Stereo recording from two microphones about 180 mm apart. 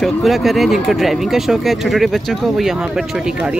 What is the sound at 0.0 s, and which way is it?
Speech, centre (ahead or behind).